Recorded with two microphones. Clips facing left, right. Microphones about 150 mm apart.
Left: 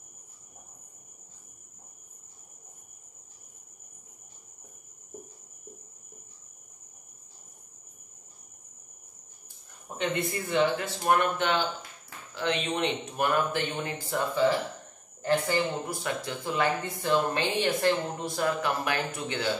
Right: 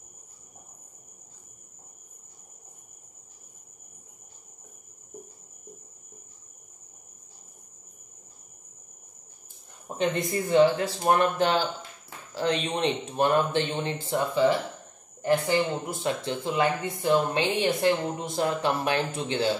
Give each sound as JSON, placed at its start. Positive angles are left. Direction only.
{"t": 9.8, "sound": "speech", "side_deg": -35}